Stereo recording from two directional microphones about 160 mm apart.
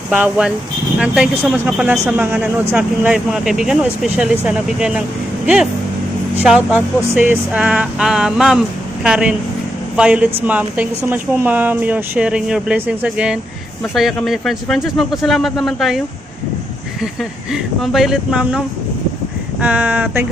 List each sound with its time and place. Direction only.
0.1 s speech: 5° right (ahead or behind)
6.4 s speech: 5° right (ahead or behind)
17.0 s speech: centre (ahead or behind)